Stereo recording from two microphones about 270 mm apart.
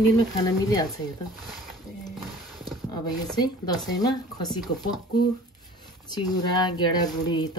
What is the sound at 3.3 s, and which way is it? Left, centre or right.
A woman's voice, centre.